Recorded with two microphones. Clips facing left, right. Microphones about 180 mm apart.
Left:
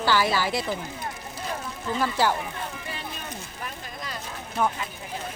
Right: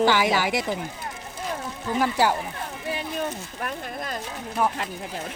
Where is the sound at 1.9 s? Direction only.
10° right (ahead or behind).